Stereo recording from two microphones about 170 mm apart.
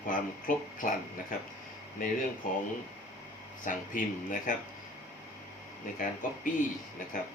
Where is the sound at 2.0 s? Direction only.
50° left (ahead or behind).